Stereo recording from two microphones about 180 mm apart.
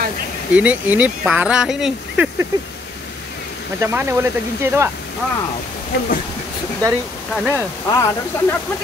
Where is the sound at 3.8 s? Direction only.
15° right (ahead or behind).